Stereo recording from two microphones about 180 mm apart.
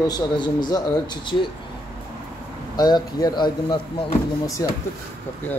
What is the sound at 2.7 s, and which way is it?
Speech, 20° left (ahead or behind).